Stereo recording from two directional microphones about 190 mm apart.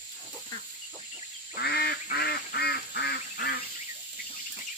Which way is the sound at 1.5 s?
55° left (ahead or behind).